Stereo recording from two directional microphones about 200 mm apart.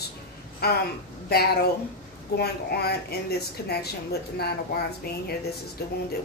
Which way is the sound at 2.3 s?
55° left (ahead or behind).